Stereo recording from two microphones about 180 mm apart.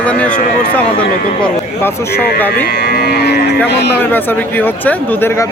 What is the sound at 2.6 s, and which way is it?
Cattle, 60° left (ahead or behind).